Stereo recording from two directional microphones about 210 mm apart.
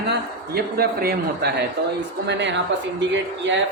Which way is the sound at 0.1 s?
50° right (ahead or behind).